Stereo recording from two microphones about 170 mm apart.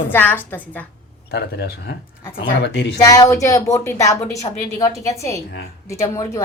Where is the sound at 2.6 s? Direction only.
90° left.